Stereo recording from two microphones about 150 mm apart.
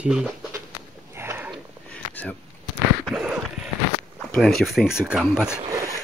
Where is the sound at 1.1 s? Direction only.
15° right (ahead or behind).